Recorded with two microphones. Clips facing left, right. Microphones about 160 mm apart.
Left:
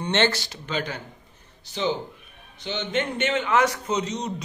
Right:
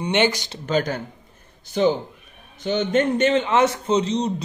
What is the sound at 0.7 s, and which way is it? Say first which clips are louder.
A man's voice: right 8 dB; 45° right (ahead or behind).